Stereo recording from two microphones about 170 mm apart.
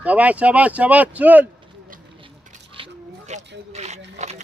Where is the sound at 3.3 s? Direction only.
40° right (ahead or behind).